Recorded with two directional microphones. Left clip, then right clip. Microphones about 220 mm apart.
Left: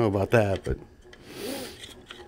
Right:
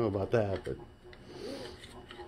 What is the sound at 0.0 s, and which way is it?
Speech, 45° left (ahead or behind).